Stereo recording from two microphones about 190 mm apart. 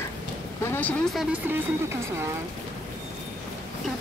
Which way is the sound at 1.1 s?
10° right (ahead or behind).